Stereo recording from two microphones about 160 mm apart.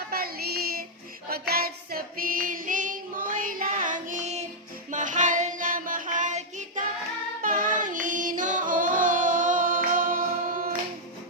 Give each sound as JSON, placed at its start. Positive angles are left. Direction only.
{"t": 0.1, "sound": "music", "side_deg": -70}
{"t": 1.3, "sound": "female singing", "side_deg": -70}
{"t": 7.4, "sound": "music", "side_deg": -55}